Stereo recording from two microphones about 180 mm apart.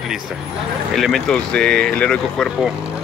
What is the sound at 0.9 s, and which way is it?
Speech, centre (ahead or behind).